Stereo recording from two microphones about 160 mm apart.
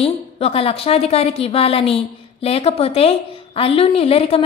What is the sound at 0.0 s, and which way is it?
A woman's voice, 40° left (ahead or behind).